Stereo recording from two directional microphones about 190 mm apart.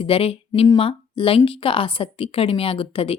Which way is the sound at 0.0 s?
30° left (ahead or behind).